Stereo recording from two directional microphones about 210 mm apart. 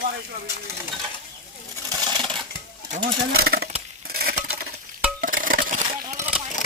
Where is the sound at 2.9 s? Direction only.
45° right (ahead or behind).